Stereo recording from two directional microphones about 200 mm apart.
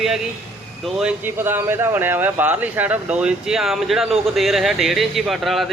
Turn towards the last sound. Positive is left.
turn(degrees=0)  # may be behind; listen again after turning